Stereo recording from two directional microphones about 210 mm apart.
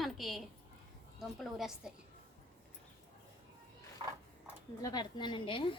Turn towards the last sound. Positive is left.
turn(degrees=25)  # may be behind; listen again after turning